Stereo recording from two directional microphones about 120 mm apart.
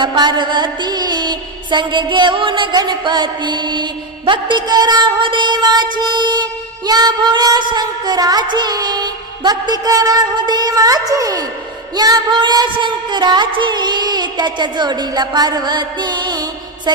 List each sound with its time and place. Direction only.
0.0 s music: 40° right (ahead or behind)